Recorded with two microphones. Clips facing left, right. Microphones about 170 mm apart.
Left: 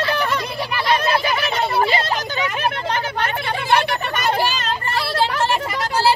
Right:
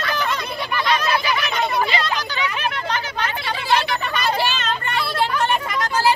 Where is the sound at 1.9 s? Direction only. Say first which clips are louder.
Left 2 dB; 50° left (ahead or behind).